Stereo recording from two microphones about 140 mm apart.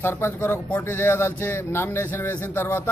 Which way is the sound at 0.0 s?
15° left (ahead or behind).